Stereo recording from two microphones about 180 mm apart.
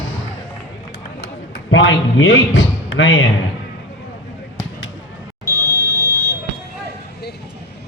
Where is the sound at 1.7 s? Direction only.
90° left.